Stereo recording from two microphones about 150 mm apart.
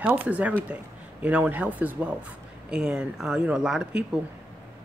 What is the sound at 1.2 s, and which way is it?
Speech, 10° right (ahead or behind).